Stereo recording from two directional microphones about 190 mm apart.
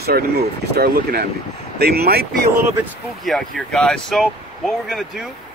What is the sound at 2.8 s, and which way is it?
Speech, centre (ahead or behind).